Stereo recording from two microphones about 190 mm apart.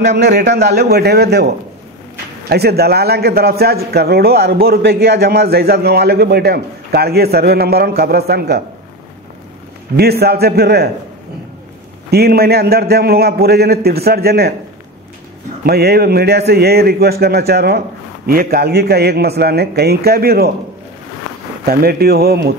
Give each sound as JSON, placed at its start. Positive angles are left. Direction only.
{"t": 0.0, "sound": "a man's voice", "side_deg": -65}
{"t": 2.5, "sound": "a man's voice", "side_deg": -55}
{"t": 9.9, "sound": "a man's voice", "side_deg": -55}
{"t": 12.1, "sound": "a man's voice", "side_deg": -55}
{"t": 15.6, "sound": "a man's voice", "side_deg": -55}
{"t": 21.6, "sound": "a man's voice", "side_deg": -55}